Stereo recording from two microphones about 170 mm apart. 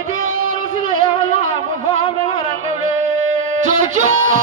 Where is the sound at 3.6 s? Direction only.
45° right (ahead or behind).